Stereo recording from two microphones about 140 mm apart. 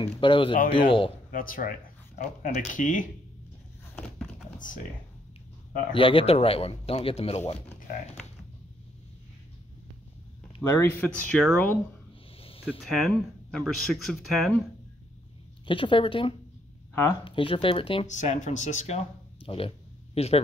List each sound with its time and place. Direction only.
0.0 s speech: 35° left (ahead or behind)
1.3 s speech: 85° left
2.1 s speech: 65° left (ahead or behind)
5.9 s speech: 40° left (ahead or behind)
10.6 s speech: 20° left (ahead or behind)
12.4 s a sound: 45° left (ahead or behind)
12.6 s speech: centre (ahead or behind)
15.6 s speech: 35° left (ahead or behind)
16.9 s speech: 20° left (ahead or behind)
17.2 s speech: 40° left (ahead or behind)
18.0 s speech: 55° left (ahead or behind)